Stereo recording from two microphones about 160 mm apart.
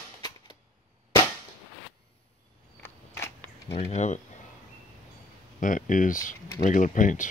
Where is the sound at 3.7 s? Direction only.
45° left (ahead or behind).